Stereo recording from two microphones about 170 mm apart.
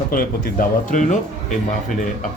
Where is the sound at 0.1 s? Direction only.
55° left (ahead or behind).